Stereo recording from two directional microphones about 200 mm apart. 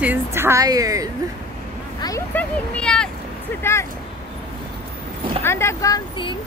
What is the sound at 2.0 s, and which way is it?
Speech, 10° left (ahead or behind).